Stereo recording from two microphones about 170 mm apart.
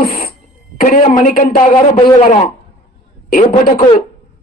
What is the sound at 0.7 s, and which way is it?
Speech, 55° left (ahead or behind).